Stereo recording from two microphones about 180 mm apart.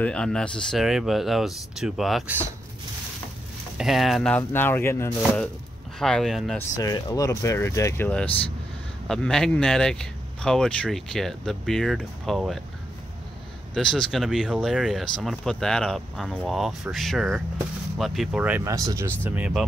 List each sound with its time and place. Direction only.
0.0 s speech: 5° left (ahead or behind)
3.7 s speech: centre (ahead or behind)
6.8 s speech: 20° left (ahead or behind); by 12.6 s centre (ahead or behind)
13.7 s speech: 5° left (ahead or behind)